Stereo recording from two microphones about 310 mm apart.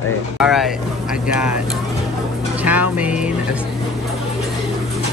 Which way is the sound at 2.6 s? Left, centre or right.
Centre.